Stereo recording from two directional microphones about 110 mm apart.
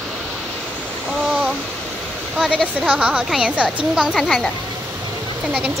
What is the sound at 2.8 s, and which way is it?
A woman's voice, 10° right (ahead or behind).